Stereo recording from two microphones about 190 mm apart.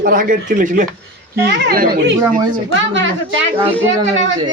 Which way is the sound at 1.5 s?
60° right (ahead or behind).